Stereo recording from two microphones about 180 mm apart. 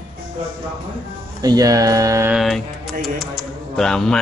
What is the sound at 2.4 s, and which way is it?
Mantra, centre (ahead or behind).